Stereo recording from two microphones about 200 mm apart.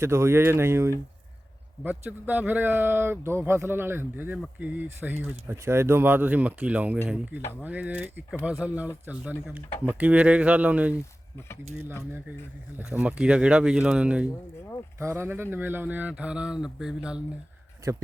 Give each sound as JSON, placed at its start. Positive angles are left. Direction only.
{"t": 0.0, "sound": "speech", "side_deg": -15}
{"t": 9.6, "sound": "speech", "side_deg": 10}
{"t": 9.9, "sound": "speech", "side_deg": -5}
{"t": 12.8, "sound": "speech", "side_deg": -5}
{"t": 17.8, "sound": "speech", "side_deg": -15}